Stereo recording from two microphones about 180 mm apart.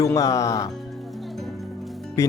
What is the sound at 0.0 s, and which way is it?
Speech, 20° left (ahead or behind).